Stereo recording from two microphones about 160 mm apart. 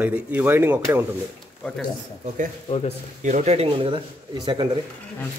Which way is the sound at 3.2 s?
45° right (ahead or behind).